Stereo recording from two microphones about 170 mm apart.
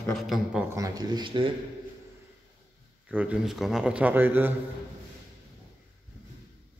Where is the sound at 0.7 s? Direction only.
20° right (ahead or behind).